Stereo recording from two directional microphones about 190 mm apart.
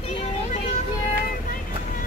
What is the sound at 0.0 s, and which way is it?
Vehicle, 30° left (ahead or behind).